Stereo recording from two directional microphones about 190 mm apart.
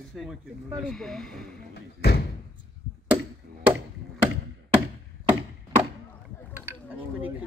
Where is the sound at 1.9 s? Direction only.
55° left (ahead or behind).